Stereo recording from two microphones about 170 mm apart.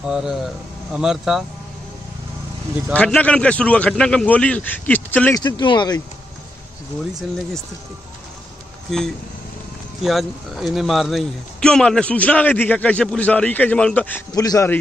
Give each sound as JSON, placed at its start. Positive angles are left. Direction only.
{"t": 0.0, "sound": "speech", "side_deg": -5}
{"t": 2.9, "sound": "speech", "side_deg": 10}
{"t": 5.3, "sound": "speech", "side_deg": 25}
{"t": 10.0, "sound": "speech", "side_deg": 0}
{"t": 14.3, "sound": "speech", "side_deg": 20}